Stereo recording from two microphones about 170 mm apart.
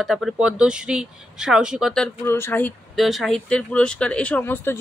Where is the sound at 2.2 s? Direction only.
15° left (ahead or behind).